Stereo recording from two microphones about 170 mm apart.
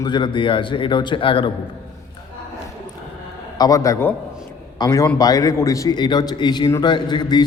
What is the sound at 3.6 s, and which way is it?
A man's voice, 20° left (ahead or behind).